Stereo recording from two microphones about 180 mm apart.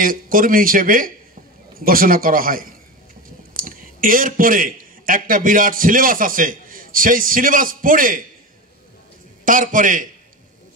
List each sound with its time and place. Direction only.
0.0 s a man's voice: 50° right (ahead or behind)
9.4 s speech: 50° right (ahead or behind)